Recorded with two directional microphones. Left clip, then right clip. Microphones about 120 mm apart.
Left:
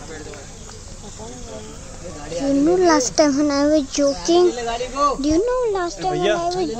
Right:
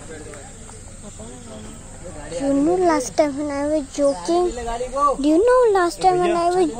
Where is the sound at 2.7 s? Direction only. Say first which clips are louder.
Left 4 dB; 10° left (ahead or behind).